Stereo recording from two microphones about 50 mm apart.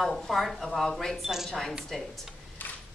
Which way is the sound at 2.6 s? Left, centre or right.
Left.